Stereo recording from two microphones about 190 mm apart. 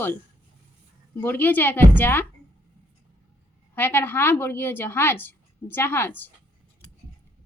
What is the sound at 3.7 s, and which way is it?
Speech, 10° left (ahead or behind).